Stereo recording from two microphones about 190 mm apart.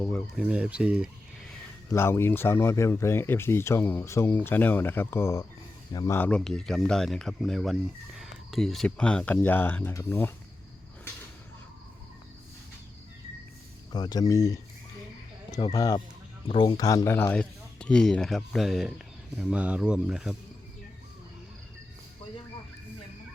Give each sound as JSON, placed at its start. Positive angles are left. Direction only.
{"t": 0.0, "sound": "speech", "side_deg": 5}
{"t": 0.4, "sound": "speech", "side_deg": -5}
{"t": 1.9, "sound": "speech", "side_deg": 15}
{"t": 13.9, "sound": "speech", "side_deg": 20}